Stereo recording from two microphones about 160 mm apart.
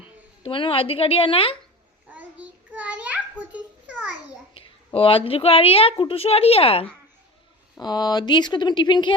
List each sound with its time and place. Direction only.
0.4 s a woman's voice: 35° left (ahead or behind)
2.0 s a sound: 10° right (ahead or behind)
4.9 s a woman's voice: 35° left (ahead or behind)
7.8 s speech: 25° left (ahead or behind)